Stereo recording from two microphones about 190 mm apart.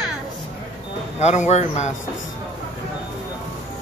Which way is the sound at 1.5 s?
35° left (ahead or behind).